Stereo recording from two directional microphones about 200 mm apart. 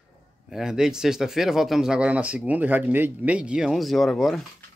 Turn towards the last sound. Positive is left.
turn(degrees=0)  # may be behind; listen again after turning